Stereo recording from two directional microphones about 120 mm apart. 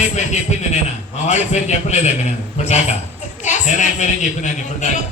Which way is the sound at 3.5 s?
90° left.